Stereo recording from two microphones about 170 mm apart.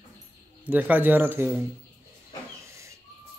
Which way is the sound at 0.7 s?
10° right (ahead or behind).